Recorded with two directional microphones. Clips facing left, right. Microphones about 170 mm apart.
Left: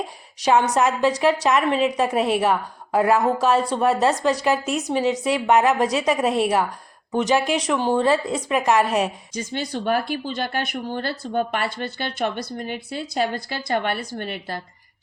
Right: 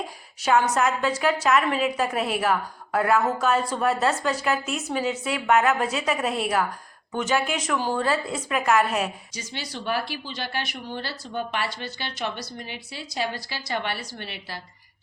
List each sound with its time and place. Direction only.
0.4 s a woman's voice: 35° left (ahead or behind)
7.7 s a woman's voice: 25° left (ahead or behind)
9.3 s speech: 50° left (ahead or behind)